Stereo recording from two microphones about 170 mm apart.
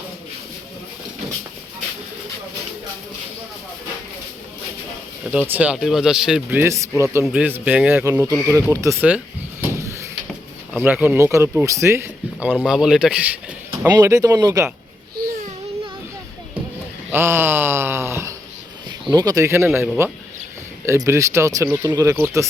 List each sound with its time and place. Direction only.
5.3 s a man's voice: 10° right (ahead or behind)
17.1 s a sound: 15° right (ahead or behind)
19.1 s speech: 20° right (ahead or behind)
20.8 s speech: 15° right (ahead or behind)